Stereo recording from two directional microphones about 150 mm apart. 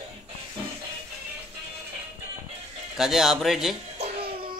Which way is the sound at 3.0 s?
Centre (ahead or behind).